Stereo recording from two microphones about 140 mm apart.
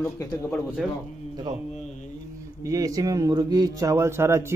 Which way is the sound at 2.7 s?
25° right (ahead or behind).